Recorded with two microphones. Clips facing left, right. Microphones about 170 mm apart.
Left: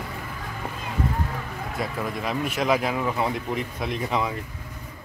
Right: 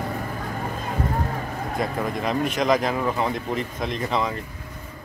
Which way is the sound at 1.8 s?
5° left (ahead or behind).